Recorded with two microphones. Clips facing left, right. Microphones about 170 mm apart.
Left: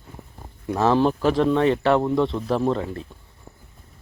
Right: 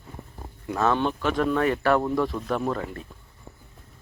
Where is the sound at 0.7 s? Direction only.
30° left (ahead or behind).